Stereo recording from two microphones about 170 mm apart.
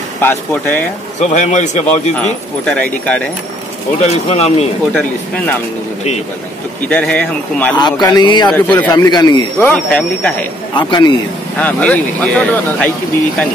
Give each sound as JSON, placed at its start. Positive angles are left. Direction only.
{"t": 0.2, "sound": "speech", "side_deg": 10}
{"t": 1.2, "sound": "a man's voice", "side_deg": 45}
{"t": 2.6, "sound": "speech", "side_deg": 5}
{"t": 4.0, "sound": "speech", "side_deg": 40}
{"t": 4.9, "sound": "speech", "side_deg": 10}
{"t": 6.9, "sound": "speech", "side_deg": 10}
{"t": 7.7, "sound": "speech", "side_deg": 25}
{"t": 8.5, "sound": "speech", "side_deg": 10}
{"t": 8.9, "sound": "speech", "side_deg": 20}
{"t": 9.7, "sound": "speech", "side_deg": 5}
{"t": 10.7, "sound": "speech", "side_deg": 25}
{"t": 11.5, "sound": "speech", "side_deg": 10}